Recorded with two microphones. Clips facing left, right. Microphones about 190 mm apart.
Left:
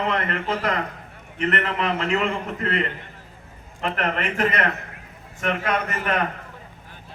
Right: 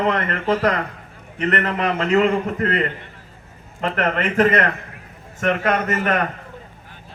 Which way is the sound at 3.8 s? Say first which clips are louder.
Right 4 dB; 50° right (ahead or behind).